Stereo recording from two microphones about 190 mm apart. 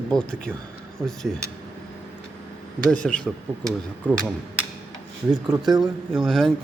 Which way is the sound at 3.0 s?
5° left (ahead or behind).